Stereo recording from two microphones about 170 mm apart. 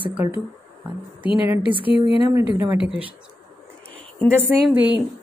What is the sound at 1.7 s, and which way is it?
Speech, 30° left (ahead or behind).